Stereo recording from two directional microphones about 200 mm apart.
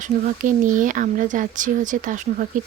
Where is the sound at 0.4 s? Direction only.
40° right (ahead or behind).